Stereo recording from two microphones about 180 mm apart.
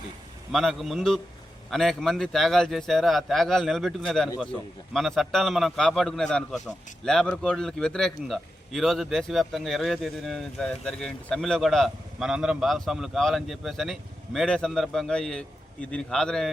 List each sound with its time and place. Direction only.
0.5 s a man's voice: centre (ahead or behind)